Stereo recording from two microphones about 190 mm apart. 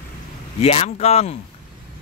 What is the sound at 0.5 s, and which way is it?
Speech, 30° left (ahead or behind).